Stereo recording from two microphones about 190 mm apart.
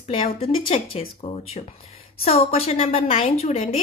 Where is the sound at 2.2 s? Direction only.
30° left (ahead or behind).